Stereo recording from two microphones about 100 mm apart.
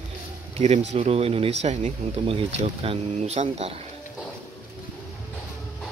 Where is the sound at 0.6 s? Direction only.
90° right.